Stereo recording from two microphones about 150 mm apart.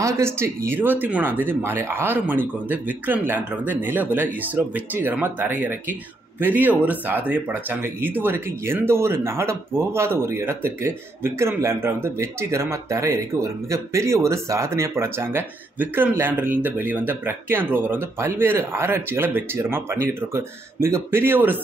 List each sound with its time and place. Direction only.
0.0 s speech: 15° right (ahead or behind)